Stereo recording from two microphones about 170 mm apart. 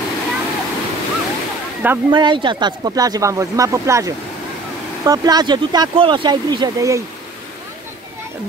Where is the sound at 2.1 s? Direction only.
30° right (ahead or behind).